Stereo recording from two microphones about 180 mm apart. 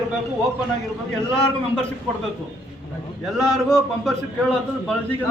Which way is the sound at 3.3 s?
Centre (ahead or behind).